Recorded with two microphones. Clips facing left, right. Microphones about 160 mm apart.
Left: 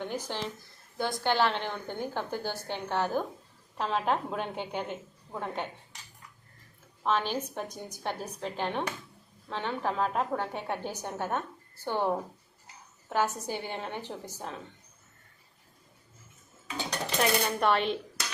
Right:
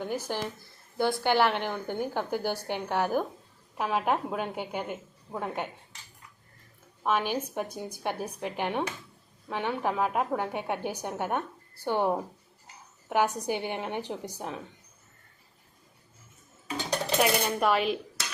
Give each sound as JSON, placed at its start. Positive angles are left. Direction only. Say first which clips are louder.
{"t": 0.0, "sound": "a woman's voice", "louder": "right 3 dB", "side_deg": -10}
{"t": 7.0, "sound": "a woman's voice", "louder": "right 1 dB", "side_deg": -10}
{"t": 17.2, "sound": "a woman's voice", "louder": "right 1 dB", "side_deg": -10}